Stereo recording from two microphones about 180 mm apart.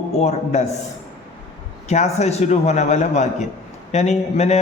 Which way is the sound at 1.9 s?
40° left (ahead or behind).